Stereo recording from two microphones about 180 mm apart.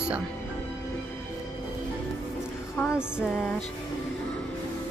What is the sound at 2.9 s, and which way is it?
Speech, 5° right (ahead or behind).